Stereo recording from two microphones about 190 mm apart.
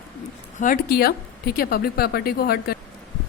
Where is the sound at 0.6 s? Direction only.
50° left (ahead or behind).